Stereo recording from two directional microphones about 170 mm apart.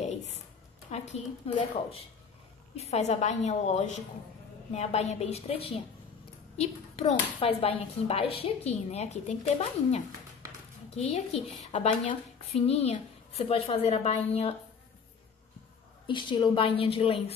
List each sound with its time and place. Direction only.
0.0 s a sound: 40° left (ahead or behind)
0.8 s a woman's voice: 45° left (ahead or behind)
16.1 s a woman's voice: 30° left (ahead or behind)